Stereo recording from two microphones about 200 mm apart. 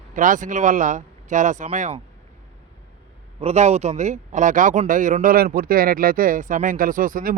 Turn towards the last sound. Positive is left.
turn(degrees=-45)  # may be behind; listen again after turning